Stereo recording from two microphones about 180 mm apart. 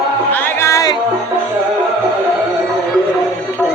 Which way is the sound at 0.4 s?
15° left (ahead or behind).